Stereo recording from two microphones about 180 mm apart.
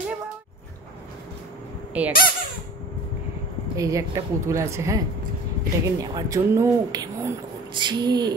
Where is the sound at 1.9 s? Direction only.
10° right (ahead or behind).